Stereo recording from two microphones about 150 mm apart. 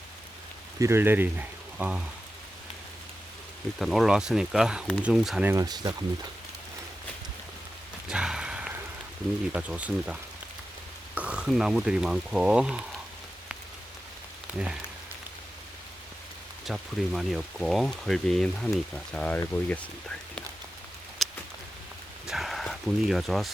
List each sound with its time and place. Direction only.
0.8 s speech: 15° right (ahead or behind)
3.8 s speech: centre (ahead or behind)
5.5 s speech: 25° right (ahead or behind)
8.0 s a sound: 5° right (ahead or behind)
9.5 s speech: 10° right (ahead or behind)
16.6 s speech: centre (ahead or behind)
21.2 s a sound: centre (ahead or behind)